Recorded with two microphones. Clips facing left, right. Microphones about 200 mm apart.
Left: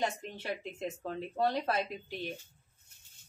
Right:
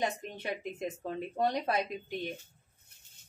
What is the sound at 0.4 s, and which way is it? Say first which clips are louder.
A woman's voice: right 1 dB; 15° right (ahead or behind).